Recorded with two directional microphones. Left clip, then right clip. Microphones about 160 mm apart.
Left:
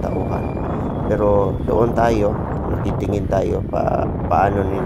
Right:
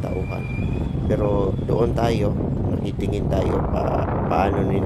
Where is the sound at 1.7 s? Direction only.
25° left (ahead or behind).